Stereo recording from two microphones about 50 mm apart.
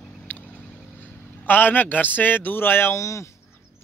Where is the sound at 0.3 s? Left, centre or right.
Left.